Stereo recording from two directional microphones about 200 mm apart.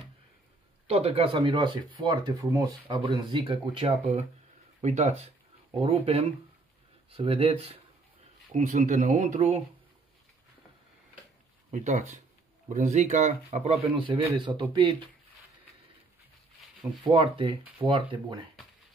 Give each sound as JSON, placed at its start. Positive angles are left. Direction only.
{"t": 0.8, "sound": "speech", "side_deg": -30}
{"t": 8.5, "sound": "speech", "side_deg": -40}
{"t": 11.7, "sound": "speech", "side_deg": -35}
{"t": 17.0, "sound": "speech", "side_deg": -25}